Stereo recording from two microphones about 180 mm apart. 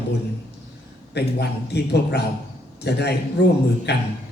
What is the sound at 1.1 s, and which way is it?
A man's voice, 65° left (ahead or behind).